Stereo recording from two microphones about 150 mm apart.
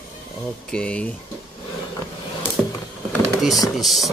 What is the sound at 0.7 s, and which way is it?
Speech, 5° left (ahead or behind).